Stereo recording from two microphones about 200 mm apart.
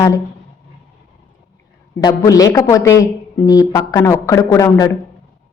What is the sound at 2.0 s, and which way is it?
A woman's voice, 20° left (ahead or behind).